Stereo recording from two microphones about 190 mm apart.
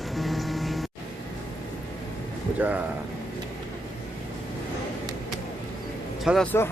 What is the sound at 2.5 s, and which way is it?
Speech, 10° right (ahead or behind).